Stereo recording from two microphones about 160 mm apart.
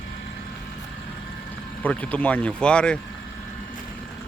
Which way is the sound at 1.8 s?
10° left (ahead or behind).